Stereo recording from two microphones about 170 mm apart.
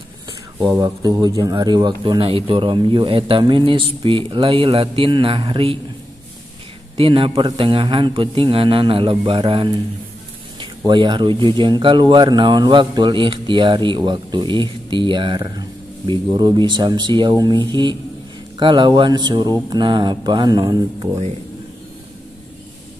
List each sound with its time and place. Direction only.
0.6 s a man's voice: 20° right (ahead or behind)
7.0 s a man's voice: 30° right (ahead or behind)